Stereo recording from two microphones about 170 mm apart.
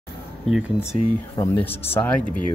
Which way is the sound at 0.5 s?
5° right (ahead or behind).